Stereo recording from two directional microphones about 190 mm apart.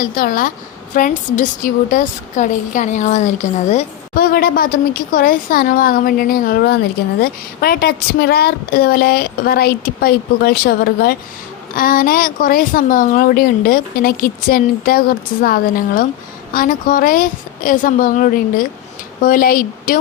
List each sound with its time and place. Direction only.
0.0 s speech: 45° left (ahead or behind)
4.1 s speech: 50° left (ahead or behind)